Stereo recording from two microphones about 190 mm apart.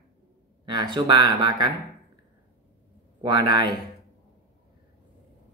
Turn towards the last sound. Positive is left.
turn(degrees=-25)  # may be behind; listen again after turning